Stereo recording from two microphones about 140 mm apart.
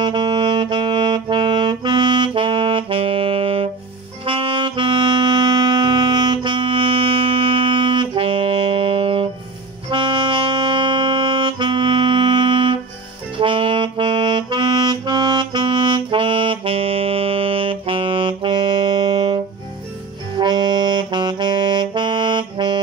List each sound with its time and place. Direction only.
0.0 s saxophone: 35° right (ahead or behind)
13.4 s music: 40° right (ahead or behind)
20.3 s saxophone: 30° right (ahead or behind)